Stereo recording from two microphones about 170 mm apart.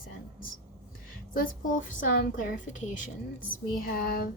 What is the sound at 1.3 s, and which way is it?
A woman's voice, 55° left (ahead or behind).